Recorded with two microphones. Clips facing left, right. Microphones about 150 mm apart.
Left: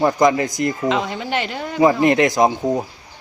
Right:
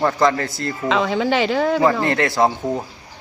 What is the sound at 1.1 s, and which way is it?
Speech, 90° right.